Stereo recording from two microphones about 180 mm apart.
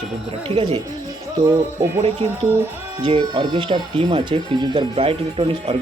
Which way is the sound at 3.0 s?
25° right (ahead or behind).